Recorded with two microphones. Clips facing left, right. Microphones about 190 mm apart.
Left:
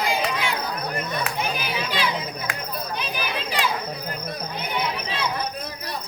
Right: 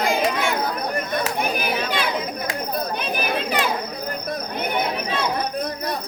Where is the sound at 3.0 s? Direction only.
55° right (ahead or behind).